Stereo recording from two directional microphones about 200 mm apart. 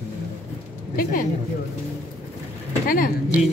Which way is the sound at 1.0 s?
45° left (ahead or behind).